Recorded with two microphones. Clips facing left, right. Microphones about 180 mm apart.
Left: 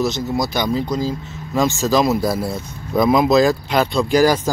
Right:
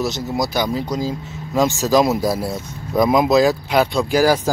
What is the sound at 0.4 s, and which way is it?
Speech, 5° right (ahead or behind).